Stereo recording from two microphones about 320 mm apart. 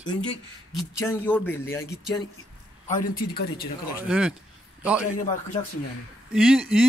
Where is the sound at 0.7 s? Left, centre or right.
Centre.